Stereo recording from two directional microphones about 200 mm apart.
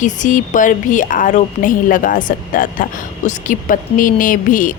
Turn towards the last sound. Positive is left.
turn(degrees=40)  # may be behind; listen again after turning